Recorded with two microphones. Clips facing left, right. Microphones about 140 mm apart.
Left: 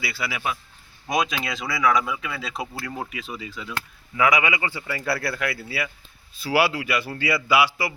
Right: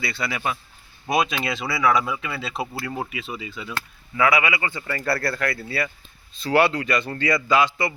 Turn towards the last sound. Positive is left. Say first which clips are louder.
# right 1 dB
turn(degrees=10)  # may be behind; listen again after turning